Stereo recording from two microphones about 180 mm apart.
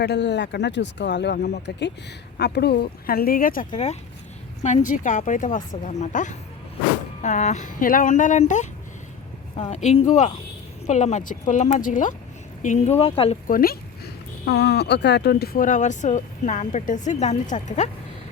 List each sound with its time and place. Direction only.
0.0 s speech: 70° left (ahead or behind); by 13.4 s 30° left (ahead or behind)
13.5 s speech: 55° left (ahead or behind)
14.4 s speech: 65° left (ahead or behind); by 17.8 s 40° left (ahead or behind)